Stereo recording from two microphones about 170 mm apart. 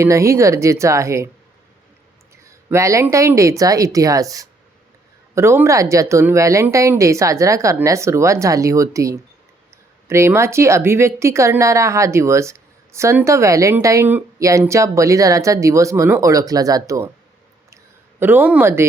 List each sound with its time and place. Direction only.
0.0 s speech: 15° right (ahead or behind)
2.3 s speech: 15° right (ahead or behind)
18.2 s speech: 10° right (ahead or behind)